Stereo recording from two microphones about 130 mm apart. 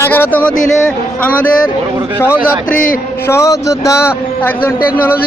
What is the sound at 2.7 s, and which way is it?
Speech, 90° left.